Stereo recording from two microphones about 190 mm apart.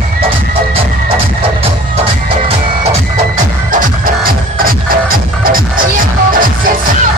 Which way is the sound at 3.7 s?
45° right (ahead or behind).